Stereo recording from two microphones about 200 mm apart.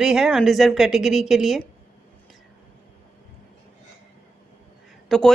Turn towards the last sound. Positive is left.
turn(degrees=0)  # may be behind; listen again after turning